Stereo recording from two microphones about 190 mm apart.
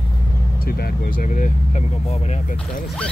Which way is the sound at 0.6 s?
50° left (ahead or behind).